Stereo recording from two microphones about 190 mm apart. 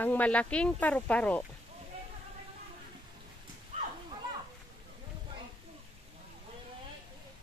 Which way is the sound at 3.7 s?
40° right (ahead or behind).